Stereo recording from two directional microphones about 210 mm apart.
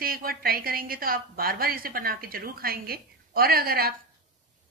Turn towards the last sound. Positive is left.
turn(degrees=-45)  # may be behind; listen again after turning